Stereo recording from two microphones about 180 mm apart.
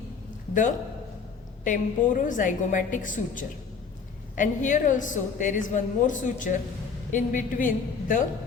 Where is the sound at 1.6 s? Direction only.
45° left (ahead or behind).